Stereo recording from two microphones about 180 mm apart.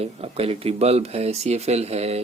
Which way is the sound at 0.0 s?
35° right (ahead or behind).